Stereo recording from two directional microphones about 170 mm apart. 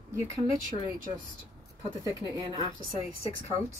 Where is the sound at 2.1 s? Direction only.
20° right (ahead or behind).